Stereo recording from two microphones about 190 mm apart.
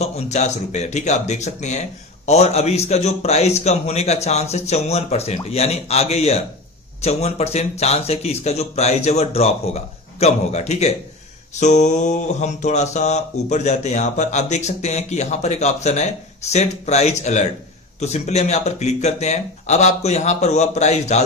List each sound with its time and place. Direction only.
0.0 s mantra: 35° left (ahead or behind)